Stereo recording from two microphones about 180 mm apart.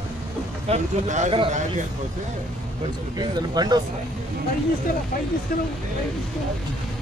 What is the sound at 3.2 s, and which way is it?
Speech, 25° right (ahead or behind).